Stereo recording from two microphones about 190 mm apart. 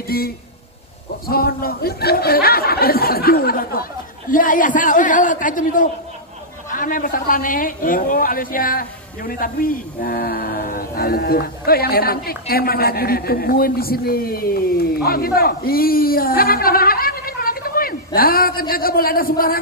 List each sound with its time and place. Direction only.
0.1 s a man's voice: 50° left (ahead or behind)